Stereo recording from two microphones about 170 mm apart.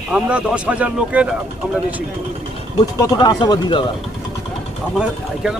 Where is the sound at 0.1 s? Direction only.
5° right (ahead or behind).